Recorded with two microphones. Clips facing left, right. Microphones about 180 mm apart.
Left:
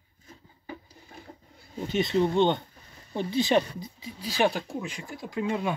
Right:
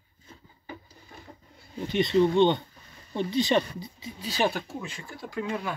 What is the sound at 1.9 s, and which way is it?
Speech, 5° left (ahead or behind).